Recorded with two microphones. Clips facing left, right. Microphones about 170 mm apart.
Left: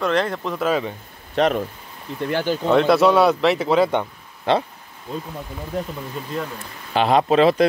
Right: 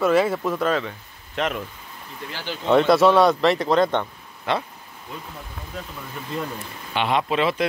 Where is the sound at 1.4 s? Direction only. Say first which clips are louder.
Left 7 dB; 35° left (ahead or behind).